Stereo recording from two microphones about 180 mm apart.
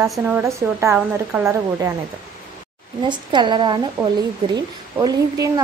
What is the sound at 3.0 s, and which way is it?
A woman's voice, 25° right (ahead or behind).